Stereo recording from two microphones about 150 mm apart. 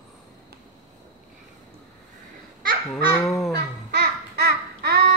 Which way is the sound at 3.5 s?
90° right.